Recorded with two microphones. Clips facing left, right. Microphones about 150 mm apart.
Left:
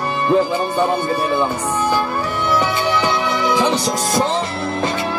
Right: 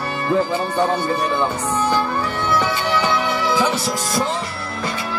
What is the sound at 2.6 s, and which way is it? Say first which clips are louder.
Music: left 2 dB; 15° left (ahead or behind).